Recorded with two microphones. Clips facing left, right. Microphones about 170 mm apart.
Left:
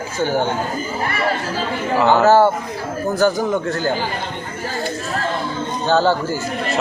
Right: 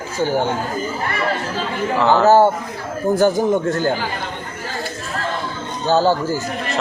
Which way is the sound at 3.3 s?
25° right (ahead or behind).